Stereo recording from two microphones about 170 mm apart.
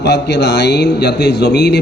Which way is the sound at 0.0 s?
90° left.